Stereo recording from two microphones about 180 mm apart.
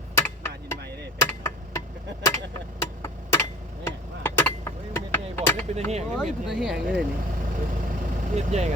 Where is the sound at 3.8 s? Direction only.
10° left (ahead or behind).